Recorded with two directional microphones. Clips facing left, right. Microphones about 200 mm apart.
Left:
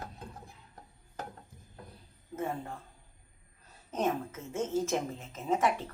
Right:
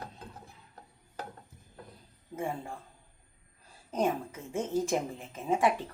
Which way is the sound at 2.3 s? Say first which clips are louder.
Even; 10° right (ahead or behind).